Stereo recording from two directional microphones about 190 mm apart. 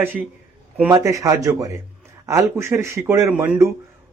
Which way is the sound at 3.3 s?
5° right (ahead or behind).